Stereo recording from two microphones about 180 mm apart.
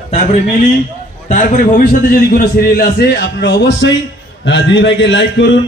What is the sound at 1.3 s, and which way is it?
A man's voice, 45° left (ahead or behind).